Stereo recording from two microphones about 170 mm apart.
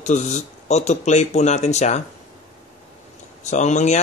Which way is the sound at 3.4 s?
45° left (ahead or behind).